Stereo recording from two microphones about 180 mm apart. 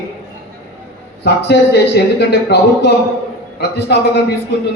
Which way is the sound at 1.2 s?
70° left (ahead or behind).